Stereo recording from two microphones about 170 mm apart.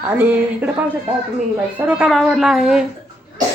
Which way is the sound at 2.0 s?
Centre (ahead or behind).